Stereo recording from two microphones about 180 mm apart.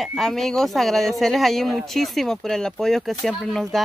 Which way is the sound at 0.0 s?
Centre (ahead or behind).